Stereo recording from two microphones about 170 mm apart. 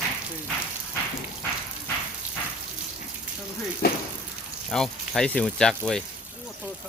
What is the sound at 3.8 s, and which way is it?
Speech, 70° left (ahead or behind).